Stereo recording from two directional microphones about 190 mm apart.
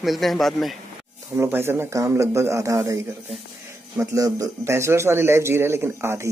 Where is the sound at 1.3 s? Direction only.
10° right (ahead or behind).